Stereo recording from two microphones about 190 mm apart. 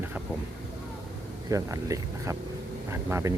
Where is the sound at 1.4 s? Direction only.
15° right (ahead or behind).